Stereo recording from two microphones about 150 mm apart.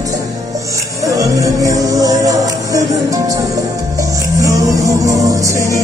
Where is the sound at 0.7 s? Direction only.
20° right (ahead or behind).